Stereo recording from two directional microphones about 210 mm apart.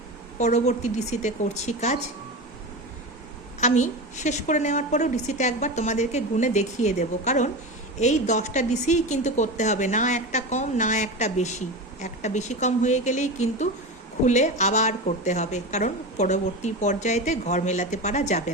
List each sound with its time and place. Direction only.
0.3 s a woman's voice: 35° left (ahead or behind)
3.6 s a woman's voice: 35° left (ahead or behind)